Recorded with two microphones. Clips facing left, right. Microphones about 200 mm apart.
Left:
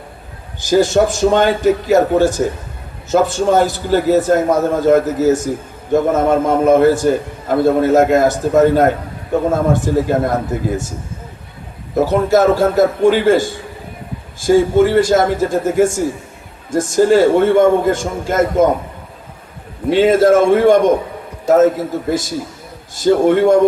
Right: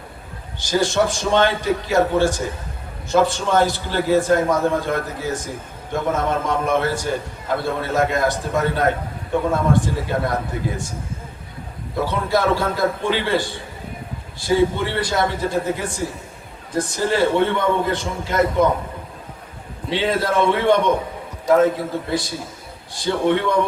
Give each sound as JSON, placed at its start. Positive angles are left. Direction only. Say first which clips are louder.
{"t": 0.7, "sound": "a man's voice", "louder": "left 7 dB", "side_deg": 45}
{"t": 11.9, "sound": "a man's voice", "louder": "left 8 dB", "side_deg": 45}
{"t": 19.9, "sound": "a man's voice", "louder": "left 10 dB", "side_deg": 45}